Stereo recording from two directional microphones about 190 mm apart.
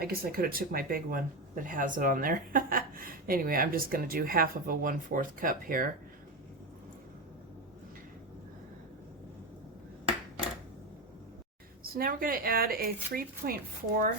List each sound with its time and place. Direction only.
0.0 s speech: 50° right (ahead or behind)
11.8 s speech: 50° right (ahead or behind)